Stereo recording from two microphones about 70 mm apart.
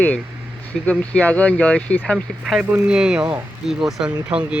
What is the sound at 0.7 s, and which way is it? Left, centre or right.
Speech, centre.